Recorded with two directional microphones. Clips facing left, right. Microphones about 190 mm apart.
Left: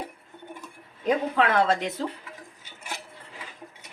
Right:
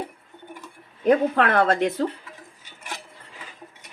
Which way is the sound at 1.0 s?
60° right (ahead or behind).